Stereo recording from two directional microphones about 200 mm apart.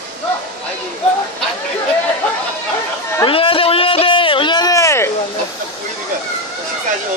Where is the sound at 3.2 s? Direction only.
25° left (ahead or behind).